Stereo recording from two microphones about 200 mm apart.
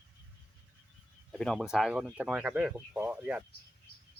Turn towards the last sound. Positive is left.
turn(degrees=-5)  # may be behind; listen again after turning